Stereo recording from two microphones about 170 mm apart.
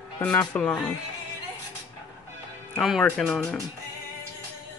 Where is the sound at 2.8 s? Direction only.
Centre (ahead or behind).